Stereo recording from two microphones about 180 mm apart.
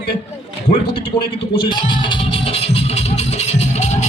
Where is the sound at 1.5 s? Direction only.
25° left (ahead or behind).